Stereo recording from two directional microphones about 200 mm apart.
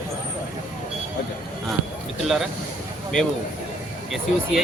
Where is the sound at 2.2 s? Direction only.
Centre (ahead or behind).